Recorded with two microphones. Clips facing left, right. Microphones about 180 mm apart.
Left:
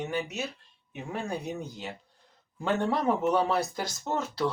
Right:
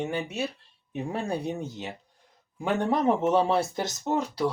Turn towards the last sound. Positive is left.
turn(degrees=-15)  # may be behind; listen again after turning